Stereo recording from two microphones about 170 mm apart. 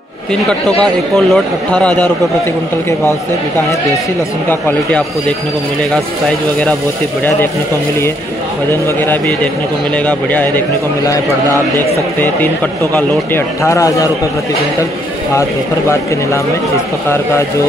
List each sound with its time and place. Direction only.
0.3 s speech: 5° left (ahead or behind)
4.5 s speech: 10° left (ahead or behind)
8.8 s speech: 10° left (ahead or behind)
12.9 s speech: 15° left (ahead or behind)